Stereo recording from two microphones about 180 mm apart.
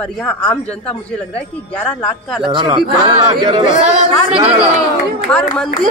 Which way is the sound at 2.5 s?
25° right (ahead or behind).